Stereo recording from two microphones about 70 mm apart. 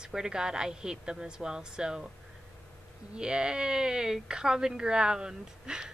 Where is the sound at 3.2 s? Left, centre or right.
Centre.